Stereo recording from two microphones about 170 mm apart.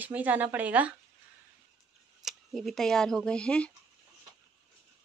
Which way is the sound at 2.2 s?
Centre (ahead or behind).